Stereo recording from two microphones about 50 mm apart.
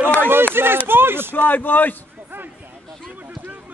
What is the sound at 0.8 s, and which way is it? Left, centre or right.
Speech, right.